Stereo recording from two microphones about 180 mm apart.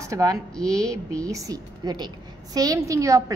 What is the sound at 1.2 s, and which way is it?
A woman's voice, 20° right (ahead or behind).